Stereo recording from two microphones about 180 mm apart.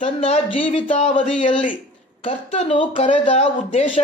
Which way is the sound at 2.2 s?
35° left (ahead or behind).